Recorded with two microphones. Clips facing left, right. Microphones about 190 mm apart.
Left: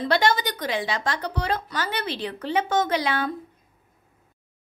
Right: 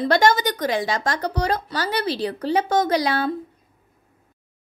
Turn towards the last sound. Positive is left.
turn(degrees=-40)  # may be behind; listen again after turning